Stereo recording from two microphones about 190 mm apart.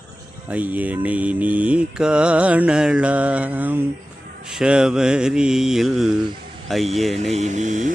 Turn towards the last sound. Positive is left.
turn(degrees=-40)  # may be behind; listen again after turning